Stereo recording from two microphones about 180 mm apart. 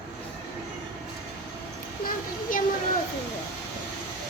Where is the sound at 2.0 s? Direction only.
50° left (ahead or behind).